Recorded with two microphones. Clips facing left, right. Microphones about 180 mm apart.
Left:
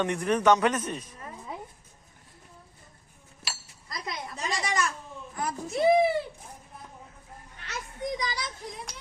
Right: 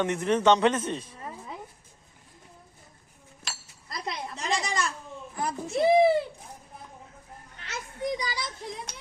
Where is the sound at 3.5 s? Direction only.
5° left (ahead or behind).